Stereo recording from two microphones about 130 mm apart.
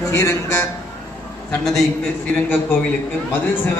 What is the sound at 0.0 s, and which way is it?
Speech, 20° left (ahead or behind).